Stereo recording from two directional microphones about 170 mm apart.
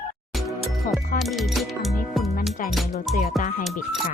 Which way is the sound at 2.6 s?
55° left (ahead or behind).